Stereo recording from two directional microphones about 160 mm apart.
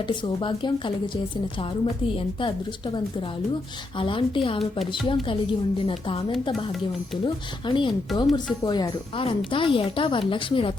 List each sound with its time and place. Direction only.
0.3 s a woman's voice: 30° left (ahead or behind)
7.7 s a woman's voice: 30° left (ahead or behind)